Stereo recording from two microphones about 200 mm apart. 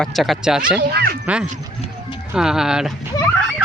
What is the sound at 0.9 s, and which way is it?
Speech, 55° right (ahead or behind).